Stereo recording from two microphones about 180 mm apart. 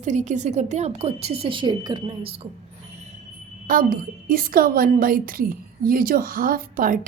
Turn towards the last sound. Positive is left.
turn(degrees=-50)  # may be behind; listen again after turning